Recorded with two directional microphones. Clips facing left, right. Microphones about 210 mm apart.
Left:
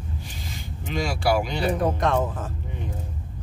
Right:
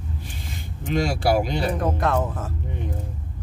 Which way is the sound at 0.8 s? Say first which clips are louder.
Right 3 dB; 50° right (ahead or behind).